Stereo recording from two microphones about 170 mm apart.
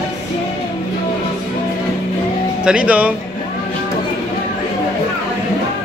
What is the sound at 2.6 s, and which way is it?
Speech, 5° right (ahead or behind).